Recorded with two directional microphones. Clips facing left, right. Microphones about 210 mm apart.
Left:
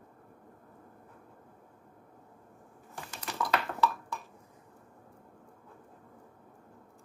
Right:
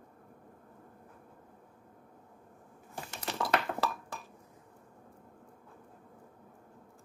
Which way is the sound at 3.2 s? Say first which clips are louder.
Right 1 dB; 25° right (ahead or behind).